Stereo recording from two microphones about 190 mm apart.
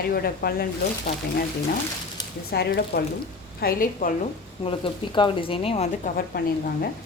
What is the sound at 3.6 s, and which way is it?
Speech, 45° left (ahead or behind).